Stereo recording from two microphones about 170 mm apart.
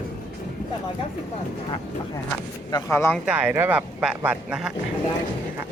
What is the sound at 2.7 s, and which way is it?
Speech, 15° left (ahead or behind).